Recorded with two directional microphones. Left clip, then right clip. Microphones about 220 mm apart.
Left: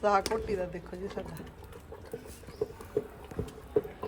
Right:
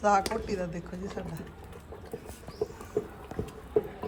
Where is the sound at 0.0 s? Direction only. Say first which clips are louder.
Right 2 dB; centre (ahead or behind).